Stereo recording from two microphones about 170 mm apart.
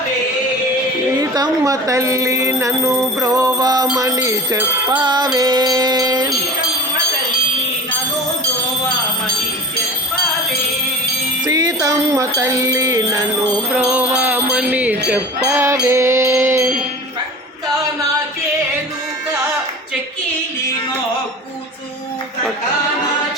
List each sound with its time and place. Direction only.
1.2 s music: 20° right (ahead or behind)
11.4 s music: 20° right (ahead or behind)
13.7 s music: 10° right (ahead or behind)